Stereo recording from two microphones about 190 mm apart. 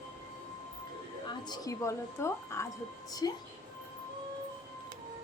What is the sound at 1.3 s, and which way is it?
A woman's voice, 20° left (ahead or behind).